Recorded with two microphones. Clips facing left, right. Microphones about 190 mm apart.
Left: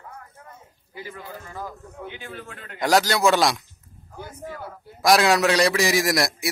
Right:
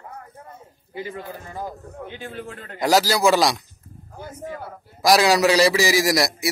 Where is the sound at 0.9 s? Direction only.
25° right (ahead or behind).